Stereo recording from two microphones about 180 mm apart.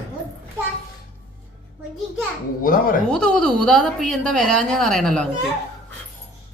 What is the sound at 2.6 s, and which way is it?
Speech, 50° left (ahead or behind).